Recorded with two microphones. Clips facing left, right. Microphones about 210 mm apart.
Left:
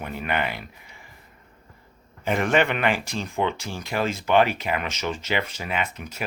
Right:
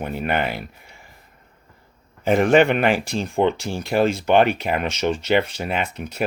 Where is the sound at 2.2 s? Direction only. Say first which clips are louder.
Right 6 dB; 40° right (ahead or behind).